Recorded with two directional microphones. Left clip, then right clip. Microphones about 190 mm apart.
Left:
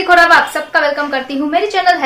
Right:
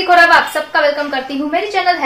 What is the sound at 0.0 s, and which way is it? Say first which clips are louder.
A woman's voice: left 1 dB; 5° left (ahead or behind).